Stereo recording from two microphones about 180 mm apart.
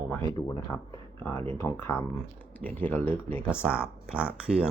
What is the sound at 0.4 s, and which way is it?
Speech, 15° left (ahead or behind).